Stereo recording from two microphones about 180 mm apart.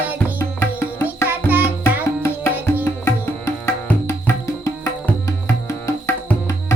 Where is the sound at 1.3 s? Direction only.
10° right (ahead or behind).